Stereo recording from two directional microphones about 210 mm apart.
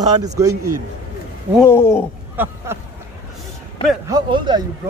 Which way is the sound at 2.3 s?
10° right (ahead or behind).